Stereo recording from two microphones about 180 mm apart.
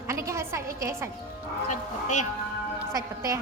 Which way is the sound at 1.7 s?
40° left (ahead or behind).